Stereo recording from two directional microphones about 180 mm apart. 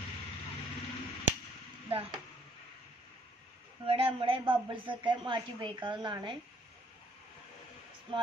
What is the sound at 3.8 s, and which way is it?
Speech, 30° right (ahead or behind).